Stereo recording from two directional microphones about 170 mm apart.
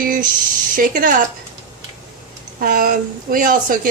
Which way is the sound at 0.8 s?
55° right (ahead or behind).